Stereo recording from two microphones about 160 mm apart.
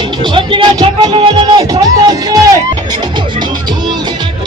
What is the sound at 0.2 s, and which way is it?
Speech, 30° right (ahead or behind).